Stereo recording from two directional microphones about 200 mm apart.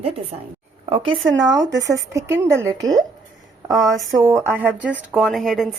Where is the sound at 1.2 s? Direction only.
65° right (ahead or behind).